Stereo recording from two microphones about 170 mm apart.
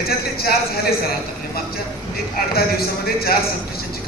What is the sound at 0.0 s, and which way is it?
Speech, 65° left (ahead or behind).